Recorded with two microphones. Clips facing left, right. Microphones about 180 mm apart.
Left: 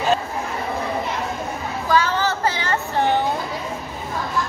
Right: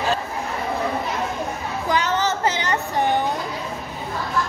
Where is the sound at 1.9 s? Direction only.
20° right (ahead or behind).